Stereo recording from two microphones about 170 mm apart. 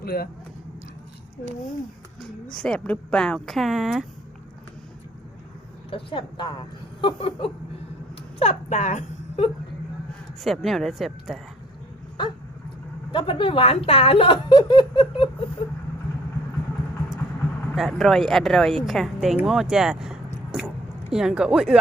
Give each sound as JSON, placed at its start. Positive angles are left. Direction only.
{"t": 0.0, "sound": "speech", "side_deg": 65}
{"t": 2.6, "sound": "speech", "side_deg": 5}
{"t": 5.9, "sound": "speech", "side_deg": 30}
{"t": 10.4, "sound": "speech", "side_deg": 0}
{"t": 13.1, "sound": "speech", "side_deg": 30}
{"t": 17.7, "sound": "speech", "side_deg": 0}
{"t": 20.5, "sound": "a sound", "side_deg": -5}